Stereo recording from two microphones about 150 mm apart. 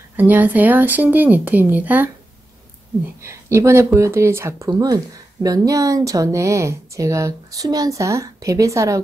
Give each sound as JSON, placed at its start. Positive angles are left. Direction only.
{"t": 0.1, "sound": "speech", "side_deg": -10}
{"t": 3.2, "sound": "speech", "side_deg": -20}